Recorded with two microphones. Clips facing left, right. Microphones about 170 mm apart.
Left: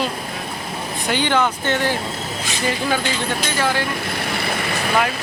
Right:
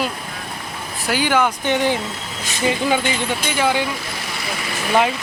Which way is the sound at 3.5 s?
15° right (ahead or behind).